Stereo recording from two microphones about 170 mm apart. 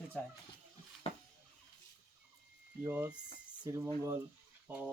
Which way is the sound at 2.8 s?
10° right (ahead or behind).